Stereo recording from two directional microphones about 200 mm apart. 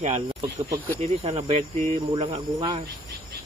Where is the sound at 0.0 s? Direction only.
35° right (ahead or behind).